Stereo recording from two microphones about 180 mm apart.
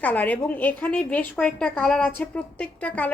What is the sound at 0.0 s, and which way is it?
A woman's voice, 10° left (ahead or behind).